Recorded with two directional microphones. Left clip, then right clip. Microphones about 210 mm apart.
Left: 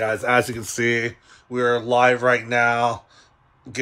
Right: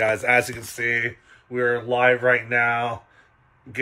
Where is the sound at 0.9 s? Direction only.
20° left (ahead or behind).